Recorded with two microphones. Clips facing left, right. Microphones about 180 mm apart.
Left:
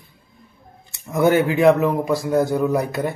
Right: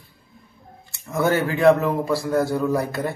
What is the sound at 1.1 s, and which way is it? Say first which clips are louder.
A man's voice: left 4 dB; 15° left (ahead or behind).